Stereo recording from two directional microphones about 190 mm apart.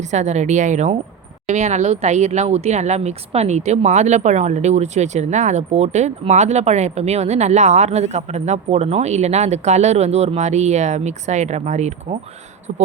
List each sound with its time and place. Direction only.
0.0 s speech: 40° right (ahead or behind)